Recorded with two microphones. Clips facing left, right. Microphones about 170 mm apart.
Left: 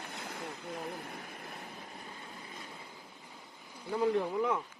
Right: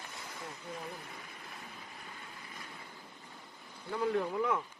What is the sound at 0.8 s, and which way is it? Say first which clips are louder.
Speech: left 4 dB; 55° left (ahead or behind).